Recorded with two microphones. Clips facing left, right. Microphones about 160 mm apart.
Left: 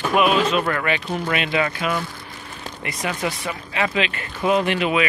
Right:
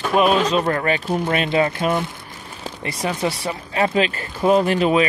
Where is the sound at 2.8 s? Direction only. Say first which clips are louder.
Right 3 dB; 30° right (ahead or behind).